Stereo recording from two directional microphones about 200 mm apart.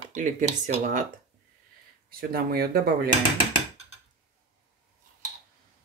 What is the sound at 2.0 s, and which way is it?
Speech, 50° right (ahead or behind).